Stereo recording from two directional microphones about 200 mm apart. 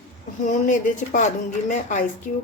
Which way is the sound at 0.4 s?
40° left (ahead or behind).